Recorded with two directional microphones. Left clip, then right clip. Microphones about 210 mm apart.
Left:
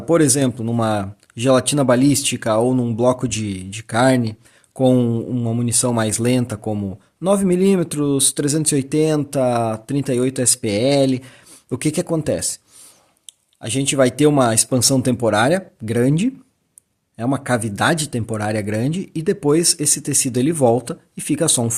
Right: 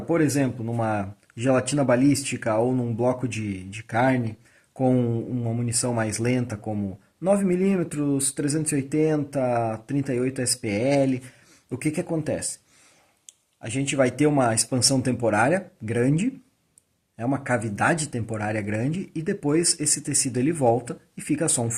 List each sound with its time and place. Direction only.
0.1 s speech: 45° left (ahead or behind)
13.6 s speech: 35° left (ahead or behind)